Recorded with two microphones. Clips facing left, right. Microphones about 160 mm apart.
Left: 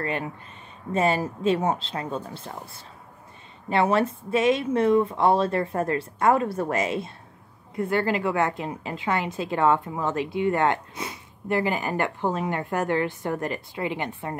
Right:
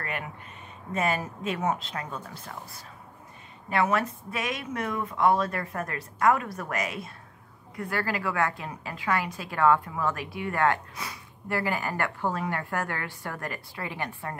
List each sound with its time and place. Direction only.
0.0 s a woman's voice: 30° left (ahead or behind)